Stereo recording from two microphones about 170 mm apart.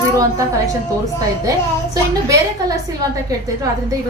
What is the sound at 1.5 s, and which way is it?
A woman's voice, 20° right (ahead or behind).